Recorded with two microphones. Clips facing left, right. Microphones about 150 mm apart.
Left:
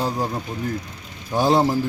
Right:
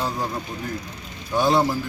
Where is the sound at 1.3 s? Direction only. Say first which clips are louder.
Left 1 dB; 35° left (ahead or behind).